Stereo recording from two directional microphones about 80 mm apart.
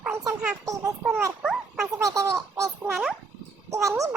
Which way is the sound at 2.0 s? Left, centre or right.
Right.